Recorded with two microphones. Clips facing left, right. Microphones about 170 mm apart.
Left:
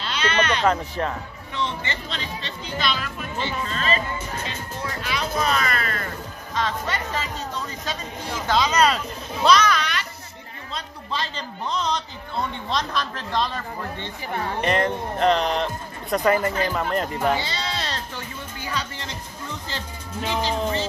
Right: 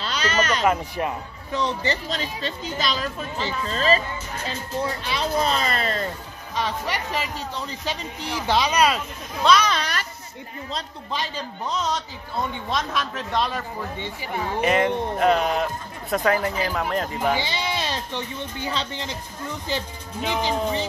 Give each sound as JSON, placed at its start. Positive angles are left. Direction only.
{"t": 0.0, "sound": "speech", "side_deg": -40}
{"t": 0.7, "sound": "speech", "side_deg": -10}
{"t": 1.5, "sound": "speech", "side_deg": -40}
{"t": 5.0, "sound": "speech", "side_deg": -30}
{"t": 6.5, "sound": "speech", "side_deg": -15}
{"t": 8.5, "sound": "speech", "side_deg": -15}
{"t": 9.7, "sound": "a sound", "side_deg": -35}
{"t": 11.1, "sound": "speech", "side_deg": -15}
{"t": 17.5, "sound": "speech", "side_deg": -15}
{"t": 20.2, "sound": "speech", "side_deg": -15}